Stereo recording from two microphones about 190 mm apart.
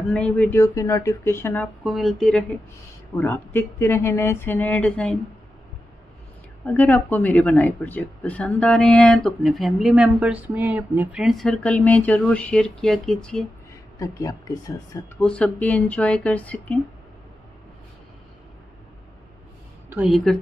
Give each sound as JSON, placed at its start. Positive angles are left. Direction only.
{"t": 0.1, "sound": "speech", "side_deg": 5}
{"t": 1.9, "sound": "speech", "side_deg": 0}
{"t": 3.2, "sound": "speech", "side_deg": 10}
{"t": 6.6, "sound": "speech", "side_deg": 10}
{"t": 13.9, "sound": "speech", "side_deg": 15}
{"t": 15.2, "sound": "speech", "side_deg": 5}
{"t": 19.9, "sound": "speech", "side_deg": -5}